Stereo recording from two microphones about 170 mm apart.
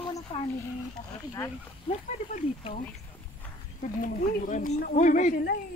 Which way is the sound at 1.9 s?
45° left (ahead or behind).